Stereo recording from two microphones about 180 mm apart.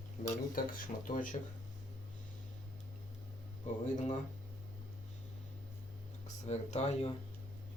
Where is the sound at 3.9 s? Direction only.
40° left (ahead or behind).